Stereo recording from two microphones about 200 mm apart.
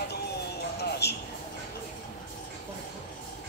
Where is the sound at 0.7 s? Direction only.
55° left (ahead or behind).